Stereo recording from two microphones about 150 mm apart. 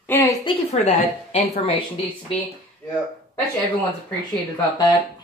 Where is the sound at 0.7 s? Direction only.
45° left (ahead or behind).